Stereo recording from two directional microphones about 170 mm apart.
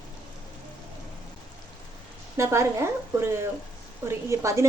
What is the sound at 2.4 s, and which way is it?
Speech, 15° right (ahead or behind).